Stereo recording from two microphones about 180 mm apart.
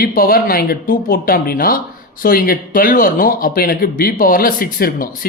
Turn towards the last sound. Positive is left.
turn(degrees=55)  # may be behind; listen again after turning